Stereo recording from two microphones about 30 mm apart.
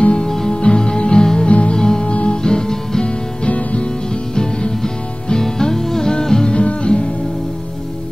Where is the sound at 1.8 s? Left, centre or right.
Left.